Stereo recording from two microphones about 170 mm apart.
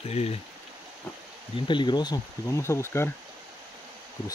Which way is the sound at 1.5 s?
30° left (ahead or behind).